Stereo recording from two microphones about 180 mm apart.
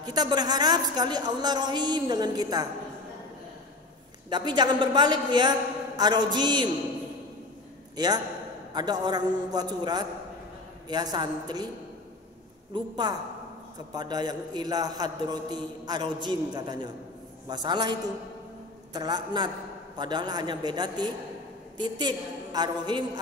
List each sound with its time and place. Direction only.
0.0 s a man's voice: 20° right (ahead or behind)
4.3 s a man's voice: 25° right (ahead or behind)
7.9 s a man's voice: 20° right (ahead or behind)
12.7 s a man's voice: 25° right (ahead or behind)